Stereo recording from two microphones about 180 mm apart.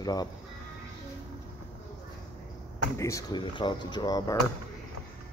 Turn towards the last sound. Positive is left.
turn(degrees=20)  # may be behind; listen again after turning